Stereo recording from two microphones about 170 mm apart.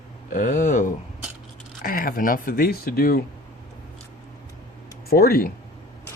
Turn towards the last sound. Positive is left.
turn(degrees=60)  # may be behind; listen again after turning